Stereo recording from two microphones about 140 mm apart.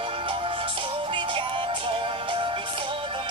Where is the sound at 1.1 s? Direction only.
40° right (ahead or behind).